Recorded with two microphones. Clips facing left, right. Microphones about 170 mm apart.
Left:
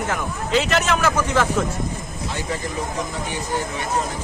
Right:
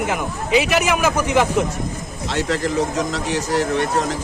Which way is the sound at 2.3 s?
85° right.